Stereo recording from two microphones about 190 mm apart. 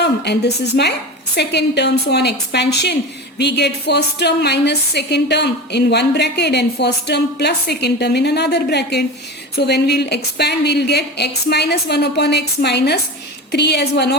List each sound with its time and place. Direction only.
0.0 s a woman's voice: 60° left (ahead or behind)